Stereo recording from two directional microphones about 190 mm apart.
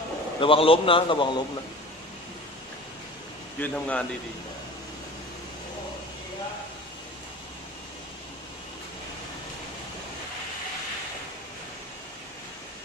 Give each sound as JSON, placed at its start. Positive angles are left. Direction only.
{"t": 0.4, "sound": "a man's voice", "side_deg": 30}
{"t": 3.5, "sound": "a man's voice", "side_deg": 10}